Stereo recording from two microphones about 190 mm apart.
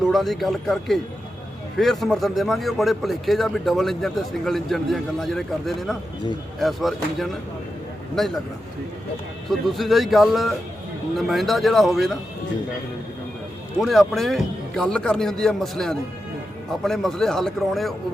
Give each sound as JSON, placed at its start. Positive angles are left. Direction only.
{"t": 0.1, "sound": "speech", "side_deg": 0}
{"t": 9.5, "sound": "speech", "side_deg": 0}
{"t": 13.7, "sound": "speech", "side_deg": 0}